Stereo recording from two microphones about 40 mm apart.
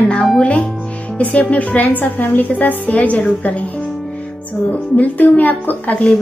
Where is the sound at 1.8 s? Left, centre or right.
Left.